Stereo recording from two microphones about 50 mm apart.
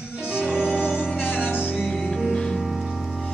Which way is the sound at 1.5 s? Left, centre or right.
Left.